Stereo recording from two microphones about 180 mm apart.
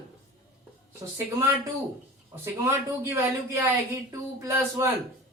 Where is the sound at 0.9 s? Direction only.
15° right (ahead or behind).